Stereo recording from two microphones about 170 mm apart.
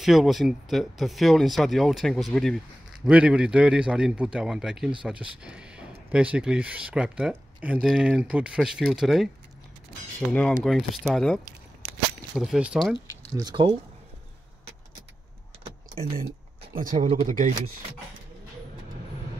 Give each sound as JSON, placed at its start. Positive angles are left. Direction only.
{"t": 0.0, "sound": "speech", "side_deg": 0}
{"t": 10.3, "sound": "speech", "side_deg": 5}
{"t": 13.4, "sound": "speech", "side_deg": -25}
{"t": 16.8, "sound": "speech", "side_deg": -50}